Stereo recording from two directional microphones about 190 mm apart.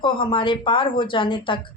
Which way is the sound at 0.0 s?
25° left (ahead or behind).